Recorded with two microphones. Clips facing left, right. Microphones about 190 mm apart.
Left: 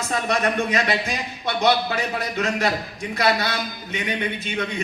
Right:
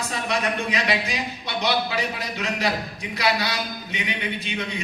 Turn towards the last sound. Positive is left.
turn(degrees=50)  # may be behind; listen again after turning